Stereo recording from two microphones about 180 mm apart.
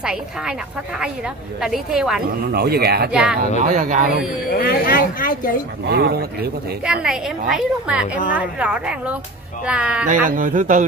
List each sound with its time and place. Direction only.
0.0 s a woman's voice: 5° right (ahead or behind)
2.5 s speech: 60° right (ahead or behind)
3.1 s a woman's voice: 5° right (ahead or behind)
3.6 s a man's voice: 45° right (ahead or behind)
4.5 s speech: 55° left (ahead or behind)
5.9 s speech: 60° right (ahead or behind)
6.9 s a woman's voice: 5° right (ahead or behind)
10.0 s a man's voice: 50° right (ahead or behind)